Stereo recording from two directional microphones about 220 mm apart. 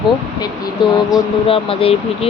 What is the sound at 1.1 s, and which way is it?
Speech, 25° left (ahead or behind).